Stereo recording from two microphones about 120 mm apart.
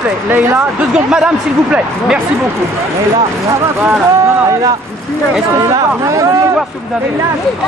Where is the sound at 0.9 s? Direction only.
5° right (ahead or behind).